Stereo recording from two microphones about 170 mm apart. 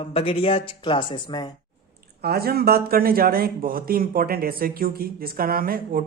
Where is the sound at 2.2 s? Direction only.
65° right (ahead or behind).